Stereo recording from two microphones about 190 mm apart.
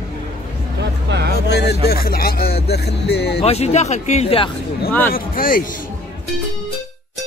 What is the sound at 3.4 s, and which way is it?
Speech, 35° left (ahead or behind).